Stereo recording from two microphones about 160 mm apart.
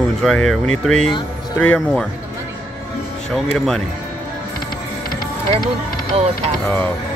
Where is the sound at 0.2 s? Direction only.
Centre (ahead or behind).